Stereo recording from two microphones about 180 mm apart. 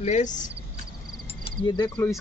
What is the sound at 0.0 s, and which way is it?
Speech, 40° left (ahead or behind).